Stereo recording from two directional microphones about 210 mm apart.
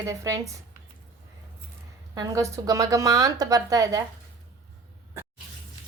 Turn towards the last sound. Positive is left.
turn(degrees=-15)  # may be behind; listen again after turning